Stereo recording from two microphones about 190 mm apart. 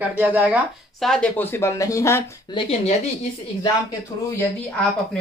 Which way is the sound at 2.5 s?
30° left (ahead or behind).